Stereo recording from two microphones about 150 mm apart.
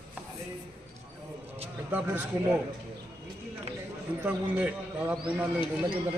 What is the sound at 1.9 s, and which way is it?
Speech, 10° right (ahead or behind).